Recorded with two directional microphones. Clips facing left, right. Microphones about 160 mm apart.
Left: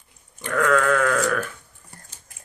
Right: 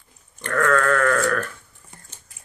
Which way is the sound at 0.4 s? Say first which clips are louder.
Even; 10° left (ahead or behind).